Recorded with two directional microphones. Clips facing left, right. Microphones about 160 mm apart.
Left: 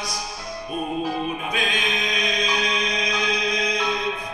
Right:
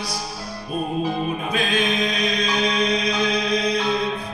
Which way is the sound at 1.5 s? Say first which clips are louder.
Right 4 dB; 35° right (ahead or behind).